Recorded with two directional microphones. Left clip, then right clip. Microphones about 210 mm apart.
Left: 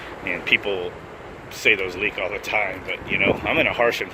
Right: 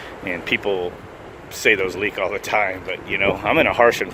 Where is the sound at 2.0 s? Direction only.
90° right.